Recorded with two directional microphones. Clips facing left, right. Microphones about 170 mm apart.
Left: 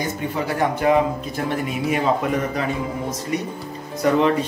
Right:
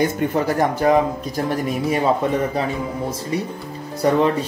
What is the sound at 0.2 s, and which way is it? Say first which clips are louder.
Speech: right 4 dB; 45° right (ahead or behind).